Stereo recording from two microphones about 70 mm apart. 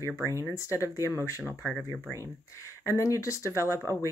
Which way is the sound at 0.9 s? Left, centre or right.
Right.